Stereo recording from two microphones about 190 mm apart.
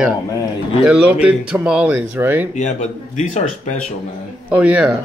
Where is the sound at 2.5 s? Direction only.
40° left (ahead or behind).